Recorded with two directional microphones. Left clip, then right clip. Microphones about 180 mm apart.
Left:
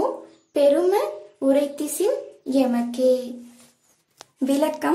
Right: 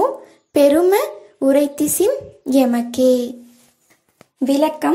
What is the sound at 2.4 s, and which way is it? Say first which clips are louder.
Child singing: right 6 dB; 30° right (ahead or behind).